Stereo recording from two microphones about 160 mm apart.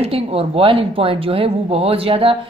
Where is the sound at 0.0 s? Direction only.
40° right (ahead or behind).